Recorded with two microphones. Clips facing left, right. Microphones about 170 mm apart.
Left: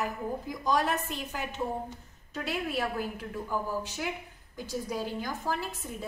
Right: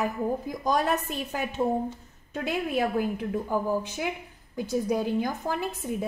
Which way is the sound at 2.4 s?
50° right (ahead or behind).